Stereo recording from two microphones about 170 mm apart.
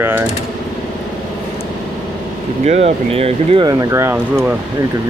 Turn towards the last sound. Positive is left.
turn(degrees=-15)  # may be behind; listen again after turning